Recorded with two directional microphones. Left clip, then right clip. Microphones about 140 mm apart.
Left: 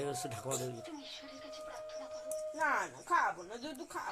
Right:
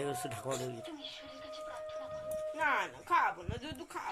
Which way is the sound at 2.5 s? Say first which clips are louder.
Right 1 dB; 20° left (ahead or behind).